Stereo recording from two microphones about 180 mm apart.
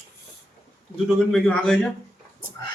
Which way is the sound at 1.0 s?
Centre (ahead or behind).